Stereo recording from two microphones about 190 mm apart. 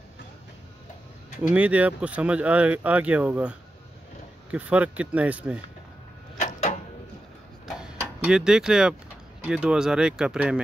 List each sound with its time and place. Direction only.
1.5 s speech: 5° right (ahead or behind)
6.3 s a sound: 40° left (ahead or behind)
8.3 s speech: 5° right (ahead or behind)